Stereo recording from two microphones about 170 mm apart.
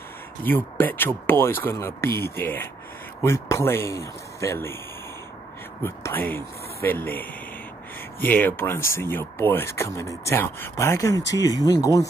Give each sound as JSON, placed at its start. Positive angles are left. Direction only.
{"t": 0.4, "sound": "speech", "side_deg": 10}
{"t": 5.8, "sound": "speech", "side_deg": 15}